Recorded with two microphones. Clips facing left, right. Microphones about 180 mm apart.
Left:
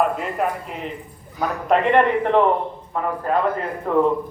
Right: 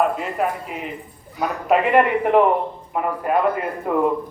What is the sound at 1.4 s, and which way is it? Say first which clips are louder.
A man's voice: even; 5° right (ahead or behind).